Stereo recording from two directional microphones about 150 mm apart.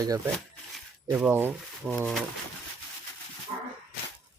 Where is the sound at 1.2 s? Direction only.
15° right (ahead or behind).